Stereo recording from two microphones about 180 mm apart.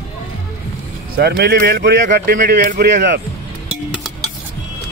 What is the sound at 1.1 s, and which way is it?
Speech, 65° right (ahead or behind).